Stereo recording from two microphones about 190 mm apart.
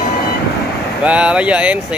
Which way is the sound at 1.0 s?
5° right (ahead or behind).